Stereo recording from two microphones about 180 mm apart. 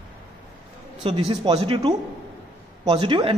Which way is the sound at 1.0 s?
25° right (ahead or behind).